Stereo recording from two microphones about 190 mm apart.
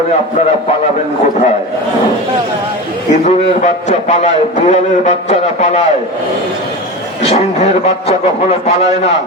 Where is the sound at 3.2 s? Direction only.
35° left (ahead or behind).